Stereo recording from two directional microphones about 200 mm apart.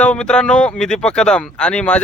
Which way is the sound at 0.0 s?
5° left (ahead or behind).